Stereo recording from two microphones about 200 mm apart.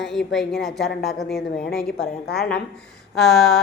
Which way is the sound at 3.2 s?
Centre (ahead or behind).